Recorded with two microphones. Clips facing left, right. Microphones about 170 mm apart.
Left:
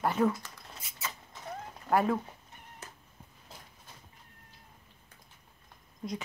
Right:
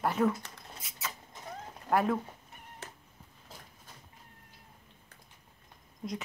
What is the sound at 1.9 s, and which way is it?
Speech, centre (ahead or behind).